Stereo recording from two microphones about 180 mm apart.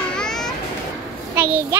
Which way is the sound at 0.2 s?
5° left (ahead or behind).